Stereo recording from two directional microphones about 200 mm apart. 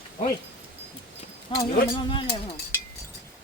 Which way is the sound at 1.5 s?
25° left (ahead or behind).